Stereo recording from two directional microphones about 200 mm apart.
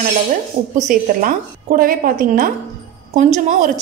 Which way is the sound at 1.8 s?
45° right (ahead or behind).